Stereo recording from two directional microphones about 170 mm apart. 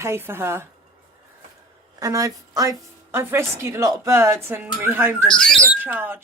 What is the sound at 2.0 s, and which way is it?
Speech, 20° right (ahead or behind).